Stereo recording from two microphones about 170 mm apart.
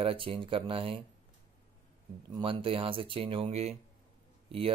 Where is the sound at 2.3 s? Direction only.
30° right (ahead or behind).